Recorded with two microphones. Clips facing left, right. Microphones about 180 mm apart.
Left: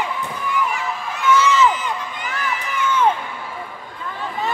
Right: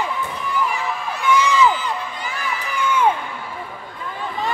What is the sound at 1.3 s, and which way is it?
Crowd, 15° right (ahead or behind).